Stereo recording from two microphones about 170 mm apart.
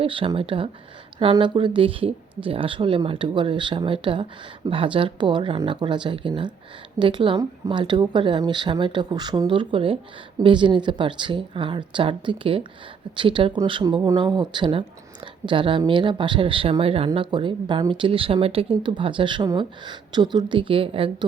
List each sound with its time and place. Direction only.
0.0 s speech: 30° right (ahead or behind)